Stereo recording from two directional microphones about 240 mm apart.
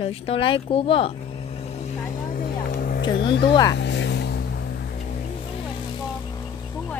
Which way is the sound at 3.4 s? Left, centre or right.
Centre.